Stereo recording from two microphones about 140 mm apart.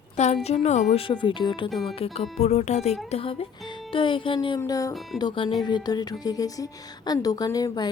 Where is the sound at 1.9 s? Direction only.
45° left (ahead or behind).